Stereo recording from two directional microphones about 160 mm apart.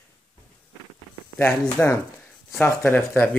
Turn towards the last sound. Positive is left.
turn(degrees=10)  # may be behind; listen again after turning